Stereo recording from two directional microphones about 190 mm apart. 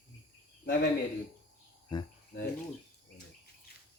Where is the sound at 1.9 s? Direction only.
25° left (ahead or behind).